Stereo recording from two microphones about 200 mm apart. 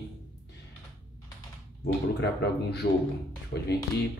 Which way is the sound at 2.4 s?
55° left (ahead or behind).